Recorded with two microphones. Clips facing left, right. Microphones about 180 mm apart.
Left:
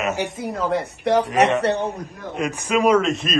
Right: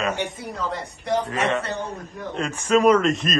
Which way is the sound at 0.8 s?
65° left (ahead or behind).